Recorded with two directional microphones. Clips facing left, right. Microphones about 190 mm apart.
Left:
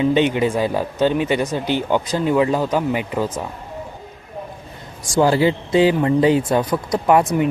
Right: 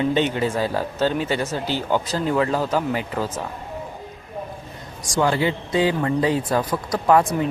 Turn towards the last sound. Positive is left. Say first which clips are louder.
# left 2 dB
turn(degrees=20)  # may be behind; listen again after turning